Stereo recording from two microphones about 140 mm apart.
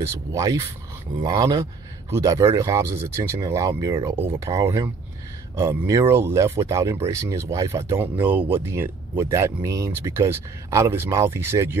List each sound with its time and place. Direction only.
0.0 s speech: 20° right (ahead or behind)